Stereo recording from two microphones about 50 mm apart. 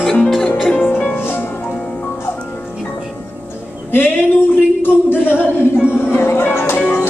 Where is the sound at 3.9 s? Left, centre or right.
Left.